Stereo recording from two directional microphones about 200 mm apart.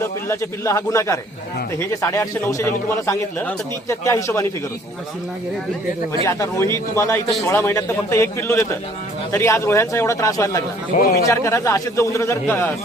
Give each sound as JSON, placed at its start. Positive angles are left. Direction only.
{"t": 0.3, "sound": "a man's voice", "side_deg": 15}
{"t": 6.2, "sound": "a man's voice", "side_deg": 15}
{"t": 10.9, "sound": "a man's voice", "side_deg": 40}
{"t": 11.3, "sound": "a man's voice", "side_deg": 15}